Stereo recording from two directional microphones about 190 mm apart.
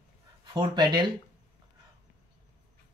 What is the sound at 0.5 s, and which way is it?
Speech, 25° right (ahead or behind).